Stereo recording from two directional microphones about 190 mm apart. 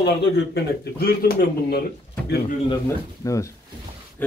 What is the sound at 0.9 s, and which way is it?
Speech, 55° left (ahead or behind).